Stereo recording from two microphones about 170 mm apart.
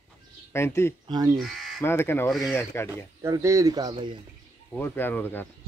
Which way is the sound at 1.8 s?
15° left (ahead or behind).